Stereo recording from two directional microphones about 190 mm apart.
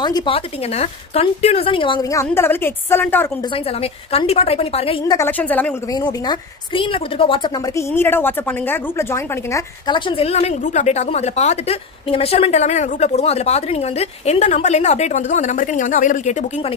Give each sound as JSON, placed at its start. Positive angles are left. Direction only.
{"t": 0.0, "sound": "a woman's voice", "side_deg": 25}
{"t": 3.5, "sound": "a woman's voice", "side_deg": 30}
{"t": 5.0, "sound": "a woman's voice", "side_deg": 15}
{"t": 5.9, "sound": "a woman's voice", "side_deg": 20}
{"t": 7.9, "sound": "a woman's voice", "side_deg": 10}